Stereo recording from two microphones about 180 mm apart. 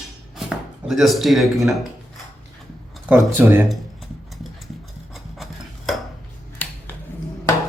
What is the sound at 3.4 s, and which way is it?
Speech, 10° right (ahead or behind).